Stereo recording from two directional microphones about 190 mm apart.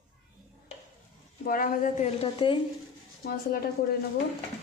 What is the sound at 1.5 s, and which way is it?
A woman's voice, 45° left (ahead or behind).